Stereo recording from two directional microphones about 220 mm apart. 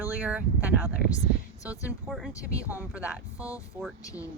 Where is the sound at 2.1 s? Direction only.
Centre (ahead or behind).